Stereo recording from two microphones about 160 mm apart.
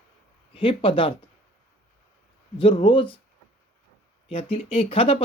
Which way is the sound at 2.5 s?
30° left (ahead or behind).